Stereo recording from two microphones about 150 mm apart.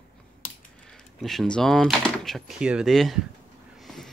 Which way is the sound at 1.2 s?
Centre (ahead or behind).